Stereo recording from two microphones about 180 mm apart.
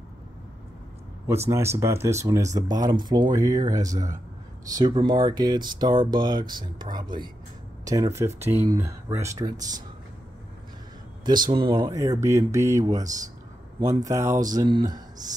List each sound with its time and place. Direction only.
1.2 s speech: 15° right (ahead or behind)
11.2 s speech: 25° right (ahead or behind)